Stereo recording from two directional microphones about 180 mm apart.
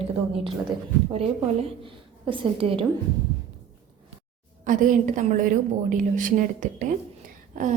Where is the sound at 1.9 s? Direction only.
30° right (ahead or behind).